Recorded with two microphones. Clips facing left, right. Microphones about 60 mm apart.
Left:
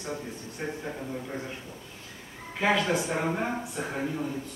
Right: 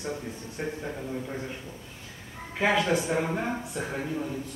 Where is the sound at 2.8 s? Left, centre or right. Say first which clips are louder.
Right 1 dB; centre.